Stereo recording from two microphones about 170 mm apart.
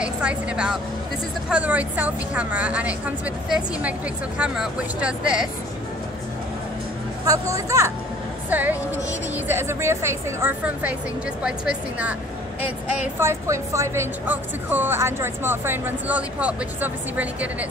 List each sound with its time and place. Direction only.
0.0 s speech: 5° right (ahead or behind)
7.2 s a woman's voice: 20° right (ahead or behind)
13.2 s speech: 15° right (ahead or behind)